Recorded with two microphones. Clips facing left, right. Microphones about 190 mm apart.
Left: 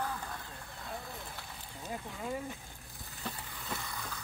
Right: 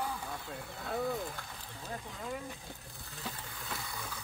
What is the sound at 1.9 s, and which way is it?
Speech, 15° left (ahead or behind).